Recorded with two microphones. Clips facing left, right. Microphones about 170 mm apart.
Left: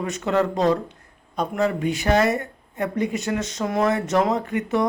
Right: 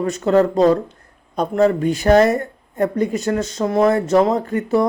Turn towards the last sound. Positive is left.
turn(degrees=-35)  # may be behind; listen again after turning